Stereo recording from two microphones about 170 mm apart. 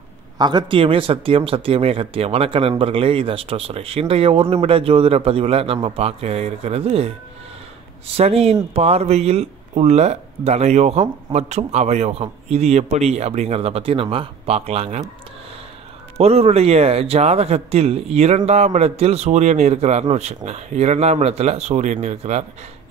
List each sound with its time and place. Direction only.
0.4 s speech: 25° right (ahead or behind)
8.2 s speech: 35° right (ahead or behind)
16.2 s speech: 35° right (ahead or behind)